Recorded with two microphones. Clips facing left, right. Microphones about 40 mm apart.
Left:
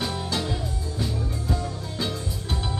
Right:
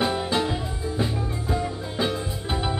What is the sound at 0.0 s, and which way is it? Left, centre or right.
Music, right.